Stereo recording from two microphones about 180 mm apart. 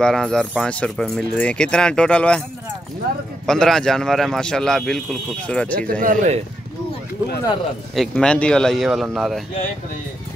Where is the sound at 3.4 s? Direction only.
5° left (ahead or behind).